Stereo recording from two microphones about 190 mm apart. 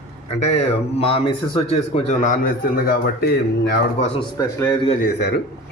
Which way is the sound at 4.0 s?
30° left (ahead or behind).